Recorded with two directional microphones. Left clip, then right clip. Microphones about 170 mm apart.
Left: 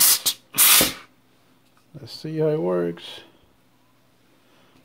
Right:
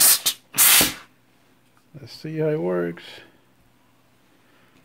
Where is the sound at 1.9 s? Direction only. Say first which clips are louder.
Left 2 dB; 15° left (ahead or behind).